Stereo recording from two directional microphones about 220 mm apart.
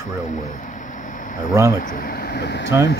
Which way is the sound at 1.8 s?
40° left (ahead or behind).